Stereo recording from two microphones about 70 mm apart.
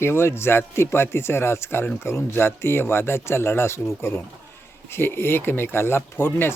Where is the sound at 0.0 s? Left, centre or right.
Left.